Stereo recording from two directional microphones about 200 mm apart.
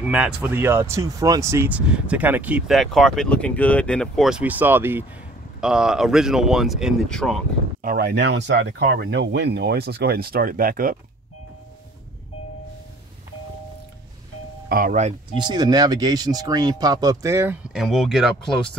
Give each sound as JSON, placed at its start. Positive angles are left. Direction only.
{"t": 0.0, "sound": "speech", "side_deg": -5}
{"t": 7.8, "sound": "speech", "side_deg": -50}
{"t": 14.7, "sound": "speech", "side_deg": -45}
{"t": 15.3, "sound": "speech", "side_deg": -20}